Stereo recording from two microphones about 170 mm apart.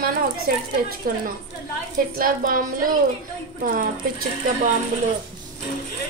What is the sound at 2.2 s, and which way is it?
Speech, 55° right (ahead or behind).